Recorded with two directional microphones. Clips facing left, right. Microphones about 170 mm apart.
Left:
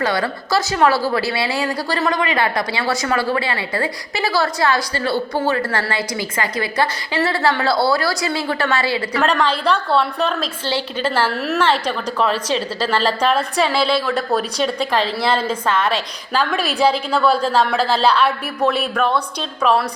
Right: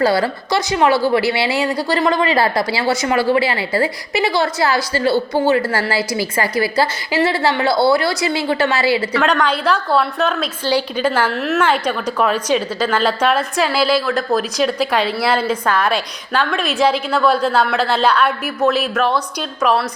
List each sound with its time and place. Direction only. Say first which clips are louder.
0.0 s a woman's voice: right 4 dB; 30° right (ahead or behind)
0.7 s a woman's voice: right 3 dB; 15° right (ahead or behind)
6.3 s a woman's voice: right 4 dB; 30° right (ahead or behind)
9.1 s a woman's voice: right 1 dB; centre (ahead or behind)
10.4 s a woman's voice: right 4 dB; 25° left (ahead or behind)
11.3 s a woman's voice: right 1 dB; centre (ahead or behind)
15.7 s a woman's voice: right 1 dB; 25° left (ahead or behind)
16.6 s a woman's voice: right 1 dB; 35° left (ahead or behind)
17.1 s a woman's voice: right 1 dB; 5° right (ahead or behind)